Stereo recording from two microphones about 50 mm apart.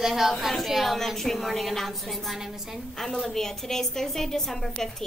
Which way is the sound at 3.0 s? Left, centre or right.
Centre.